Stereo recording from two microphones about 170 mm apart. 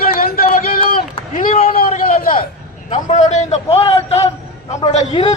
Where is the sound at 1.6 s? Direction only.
55° left (ahead or behind).